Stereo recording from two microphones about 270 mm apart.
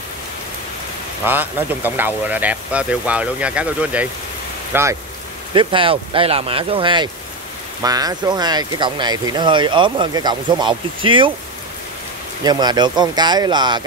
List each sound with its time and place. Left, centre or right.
1.2 s speech: centre
12.4 s speech: centre